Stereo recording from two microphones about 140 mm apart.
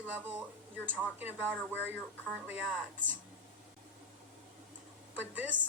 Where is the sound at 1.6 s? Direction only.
15° left (ahead or behind).